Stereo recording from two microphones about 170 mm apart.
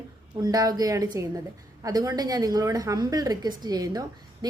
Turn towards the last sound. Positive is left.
turn(degrees=-25)  # may be behind; listen again after turning